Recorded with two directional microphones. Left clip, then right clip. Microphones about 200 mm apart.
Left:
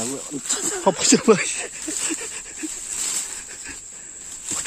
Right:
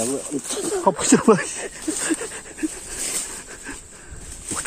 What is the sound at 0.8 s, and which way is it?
Cricket, 10° left (ahead or behind).